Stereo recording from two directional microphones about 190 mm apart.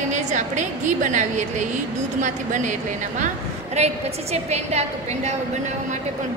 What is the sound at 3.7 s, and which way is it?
A woman's voice, 35° right (ahead or behind).